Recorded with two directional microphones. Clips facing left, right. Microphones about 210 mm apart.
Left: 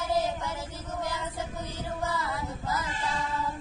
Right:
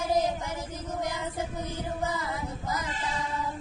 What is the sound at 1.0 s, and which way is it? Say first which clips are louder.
Music: even; 20° right (ahead or behind).